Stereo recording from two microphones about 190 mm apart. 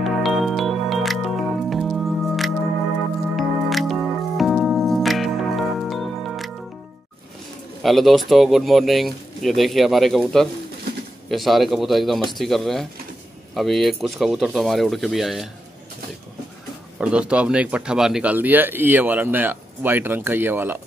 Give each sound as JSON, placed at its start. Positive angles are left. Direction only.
{"t": 0.0, "sound": "music", "side_deg": 0}
{"t": 7.8, "sound": "speech", "side_deg": 0}
{"t": 17.0, "sound": "a man's voice", "side_deg": -5}